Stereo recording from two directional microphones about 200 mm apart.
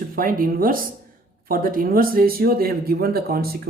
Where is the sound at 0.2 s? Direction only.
45° right (ahead or behind).